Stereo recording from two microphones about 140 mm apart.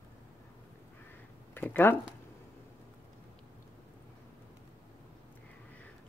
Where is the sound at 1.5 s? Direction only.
15° left (ahead or behind).